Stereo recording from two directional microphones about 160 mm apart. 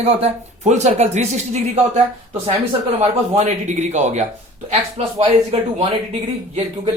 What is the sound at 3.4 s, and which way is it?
A man's voice, 45° right (ahead or behind).